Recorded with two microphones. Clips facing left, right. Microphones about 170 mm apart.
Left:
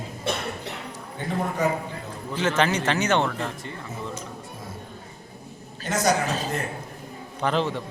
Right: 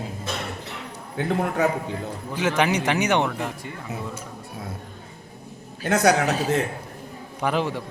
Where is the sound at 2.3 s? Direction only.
10° right (ahead or behind).